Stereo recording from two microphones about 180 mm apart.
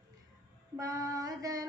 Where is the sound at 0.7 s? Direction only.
20° right (ahead or behind).